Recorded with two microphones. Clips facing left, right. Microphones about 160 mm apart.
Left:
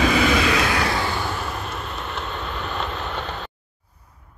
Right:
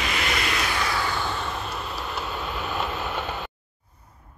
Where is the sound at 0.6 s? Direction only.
75° left (ahead or behind).